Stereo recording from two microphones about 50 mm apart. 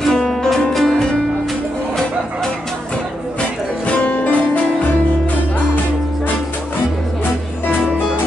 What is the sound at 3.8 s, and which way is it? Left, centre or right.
Music, left.